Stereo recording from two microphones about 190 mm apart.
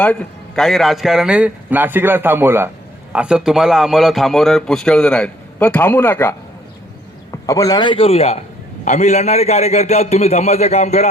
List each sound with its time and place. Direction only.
0.0 s a man's voice: 5° left (ahead or behind)
7.4 s a man's voice: 20° left (ahead or behind); by 11.1 s 35° left (ahead or behind)